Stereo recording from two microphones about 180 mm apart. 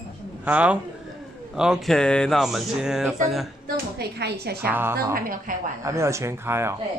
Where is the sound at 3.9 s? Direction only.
65° right (ahead or behind).